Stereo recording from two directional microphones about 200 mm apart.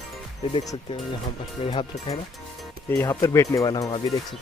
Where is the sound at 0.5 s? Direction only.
25° left (ahead or behind).